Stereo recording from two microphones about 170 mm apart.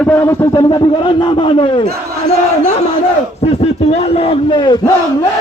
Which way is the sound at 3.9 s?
35° left (ahead or behind).